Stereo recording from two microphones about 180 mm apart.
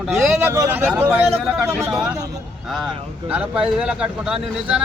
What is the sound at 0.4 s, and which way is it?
Speech, 15° right (ahead or behind).